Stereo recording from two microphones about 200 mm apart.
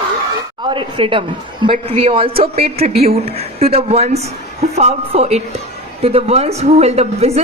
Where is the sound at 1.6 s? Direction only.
30° right (ahead or behind).